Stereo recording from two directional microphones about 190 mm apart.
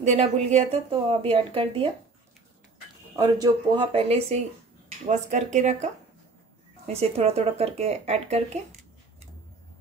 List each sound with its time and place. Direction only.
0.0 s a woman's voice: 35° right (ahead or behind)
3.2 s a woman's voice: 25° right (ahead or behind); by 5.9 s 40° right (ahead or behind)
6.9 s a woman's voice: 30° right (ahead or behind)